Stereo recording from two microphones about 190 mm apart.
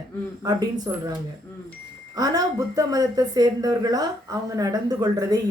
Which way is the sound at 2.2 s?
20° right (ahead or behind).